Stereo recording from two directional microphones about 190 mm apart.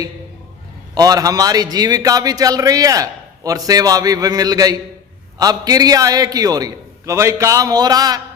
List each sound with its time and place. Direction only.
0.9 s a man's voice: 20° right (ahead or behind)